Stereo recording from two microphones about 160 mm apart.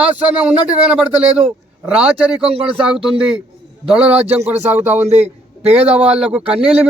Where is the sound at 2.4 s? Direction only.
35° right (ahead or behind).